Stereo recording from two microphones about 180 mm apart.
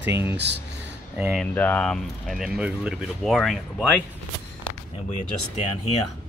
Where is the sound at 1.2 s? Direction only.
5° right (ahead or behind).